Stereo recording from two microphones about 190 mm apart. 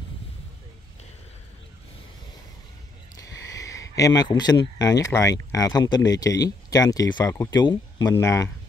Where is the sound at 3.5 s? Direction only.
15° left (ahead or behind).